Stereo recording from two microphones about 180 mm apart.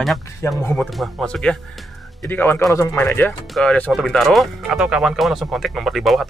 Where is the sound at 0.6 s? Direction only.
15° left (ahead or behind).